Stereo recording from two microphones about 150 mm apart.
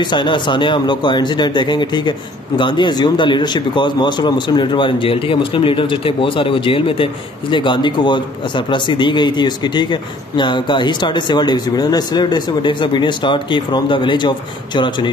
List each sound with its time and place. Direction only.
0.0 s speech: 30° left (ahead or behind)